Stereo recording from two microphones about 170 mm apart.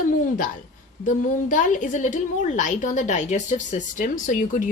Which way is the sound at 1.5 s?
50° left (ahead or behind).